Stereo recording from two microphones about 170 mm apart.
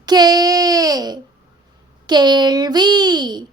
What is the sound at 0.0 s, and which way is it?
Child singing, 25° right (ahead or behind).